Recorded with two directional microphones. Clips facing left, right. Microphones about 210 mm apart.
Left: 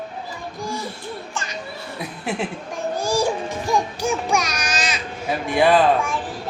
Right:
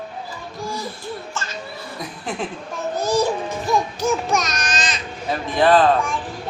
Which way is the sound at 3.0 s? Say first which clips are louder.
Right 2 dB; 10° left (ahead or behind).